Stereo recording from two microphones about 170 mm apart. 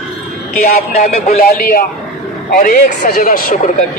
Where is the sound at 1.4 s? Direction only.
60° left (ahead or behind).